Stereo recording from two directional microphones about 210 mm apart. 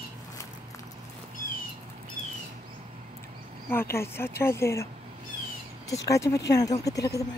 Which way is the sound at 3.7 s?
10° left (ahead or behind).